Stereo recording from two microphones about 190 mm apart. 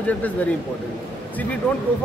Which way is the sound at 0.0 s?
10° left (ahead or behind).